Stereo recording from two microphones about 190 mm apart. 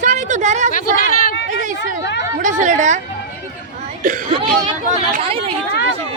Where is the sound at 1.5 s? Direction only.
40° right (ahead or behind).